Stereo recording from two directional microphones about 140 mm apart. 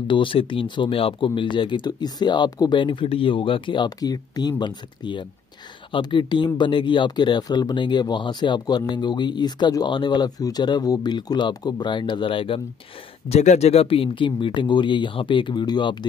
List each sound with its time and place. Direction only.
0.1 s speech: 40° left (ahead or behind)
13.3 s speech: 50° left (ahead or behind); by 16.1 s 30° left (ahead or behind)